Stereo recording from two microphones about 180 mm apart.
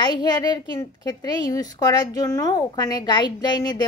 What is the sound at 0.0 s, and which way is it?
A woman's voice, 25° left (ahead or behind).